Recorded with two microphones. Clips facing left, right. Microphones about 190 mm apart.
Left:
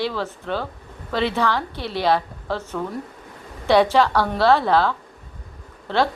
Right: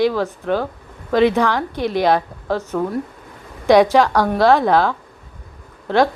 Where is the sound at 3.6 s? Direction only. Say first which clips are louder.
Right 4 dB; 15° right (ahead or behind).